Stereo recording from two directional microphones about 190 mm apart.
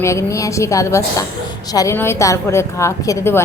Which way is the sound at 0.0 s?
15° left (ahead or behind).